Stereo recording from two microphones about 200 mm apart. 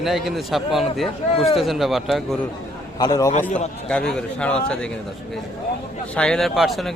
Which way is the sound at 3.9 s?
5° left (ahead or behind).